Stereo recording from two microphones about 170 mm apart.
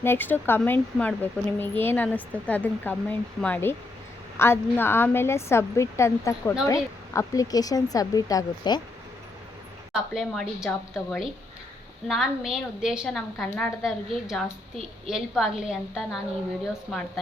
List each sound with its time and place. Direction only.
0.0 s speech: 10° left (ahead or behind)
9.9 s a woman's voice: centre (ahead or behind)
15.1 s a woman's voice: centre (ahead or behind)